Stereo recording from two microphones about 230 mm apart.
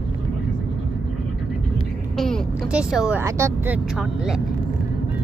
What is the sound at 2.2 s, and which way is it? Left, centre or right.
Speech, centre.